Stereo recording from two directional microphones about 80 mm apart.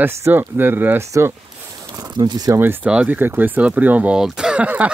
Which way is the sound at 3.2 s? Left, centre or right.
Right.